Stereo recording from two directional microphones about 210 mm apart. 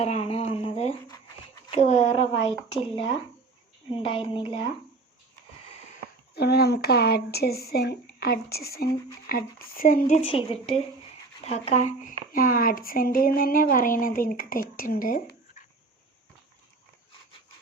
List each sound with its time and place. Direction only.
0.0 s a sound: 30° left (ahead or behind)
1.7 s a woman's voice: 30° left (ahead or behind)
6.3 s speech: 50° left (ahead or behind)
10.2 s a woman's voice: 25° left (ahead or behind); by 15.4 s 40° left (ahead or behind)